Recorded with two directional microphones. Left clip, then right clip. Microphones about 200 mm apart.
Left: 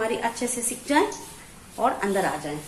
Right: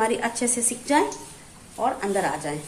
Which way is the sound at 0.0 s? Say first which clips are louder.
Right 2 dB; 15° right (ahead or behind).